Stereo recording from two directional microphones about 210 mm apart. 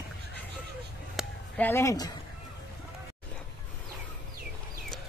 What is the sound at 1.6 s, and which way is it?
Speech, 15° left (ahead or behind).